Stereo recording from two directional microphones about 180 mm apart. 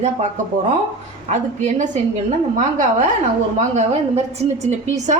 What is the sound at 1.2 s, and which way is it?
A woman's voice, 40° right (ahead or behind).